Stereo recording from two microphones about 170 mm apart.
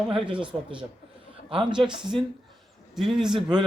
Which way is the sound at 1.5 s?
30° right (ahead or behind).